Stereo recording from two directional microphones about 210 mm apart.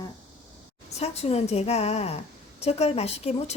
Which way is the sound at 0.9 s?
30° left (ahead or behind).